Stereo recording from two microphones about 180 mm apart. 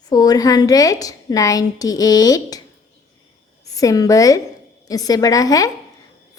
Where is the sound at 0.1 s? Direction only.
20° left (ahead or behind).